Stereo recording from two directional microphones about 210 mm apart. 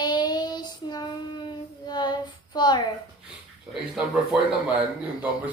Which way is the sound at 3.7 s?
Centre (ahead or behind).